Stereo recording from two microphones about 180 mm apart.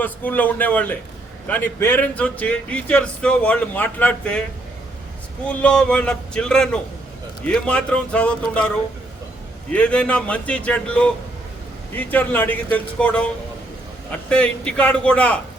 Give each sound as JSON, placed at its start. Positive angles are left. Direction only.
{"t": 0.0, "sound": "speech", "side_deg": 10}
{"t": 5.5, "sound": "speech", "side_deg": 5}